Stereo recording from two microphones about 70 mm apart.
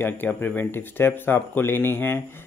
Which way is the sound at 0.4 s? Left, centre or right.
Left.